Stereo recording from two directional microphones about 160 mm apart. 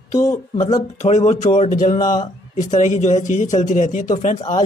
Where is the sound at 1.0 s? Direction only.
45° left (ahead or behind).